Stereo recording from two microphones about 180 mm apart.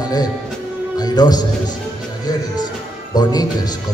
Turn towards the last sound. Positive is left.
turn(degrees=20)  # may be behind; listen again after turning